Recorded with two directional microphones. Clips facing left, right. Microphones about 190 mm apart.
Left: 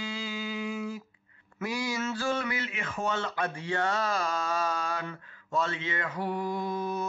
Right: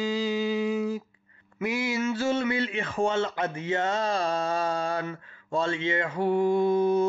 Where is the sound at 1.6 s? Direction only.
20° right (ahead or behind).